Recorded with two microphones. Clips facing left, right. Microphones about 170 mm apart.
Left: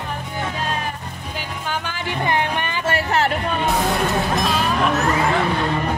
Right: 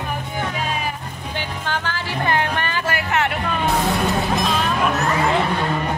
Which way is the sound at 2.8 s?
35° left (ahead or behind).